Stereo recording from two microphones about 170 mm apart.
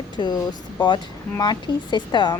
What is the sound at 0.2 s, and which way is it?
Speech, 25° left (ahead or behind).